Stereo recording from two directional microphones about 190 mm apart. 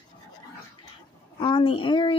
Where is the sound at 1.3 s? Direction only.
25° left (ahead or behind).